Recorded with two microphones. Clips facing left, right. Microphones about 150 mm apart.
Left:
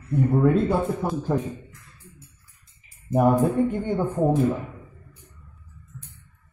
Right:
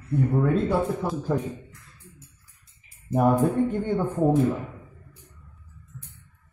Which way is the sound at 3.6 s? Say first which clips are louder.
Even; 10° left (ahead or behind).